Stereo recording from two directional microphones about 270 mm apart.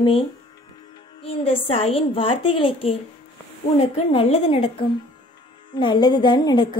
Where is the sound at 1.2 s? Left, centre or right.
Left.